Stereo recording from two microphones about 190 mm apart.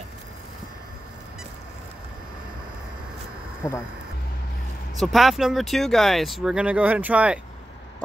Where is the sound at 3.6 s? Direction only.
15° left (ahead or behind).